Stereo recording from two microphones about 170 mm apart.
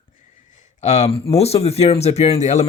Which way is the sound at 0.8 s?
40° left (ahead or behind).